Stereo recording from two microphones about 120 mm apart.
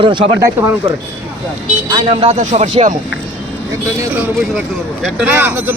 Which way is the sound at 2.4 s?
70° right (ahead or behind).